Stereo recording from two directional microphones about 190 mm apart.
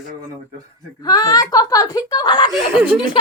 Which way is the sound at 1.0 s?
20° left (ahead or behind).